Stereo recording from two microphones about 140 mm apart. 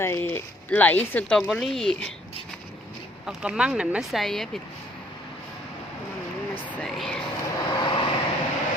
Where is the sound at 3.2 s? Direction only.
5° right (ahead or behind).